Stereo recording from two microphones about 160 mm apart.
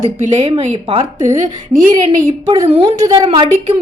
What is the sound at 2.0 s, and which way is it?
A woman's voice, 35° right (ahead or behind).